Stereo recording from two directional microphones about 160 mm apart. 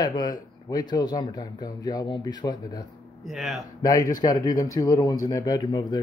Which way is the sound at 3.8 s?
20° left (ahead or behind).